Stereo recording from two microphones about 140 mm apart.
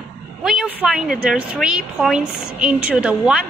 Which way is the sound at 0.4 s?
5° right (ahead or behind).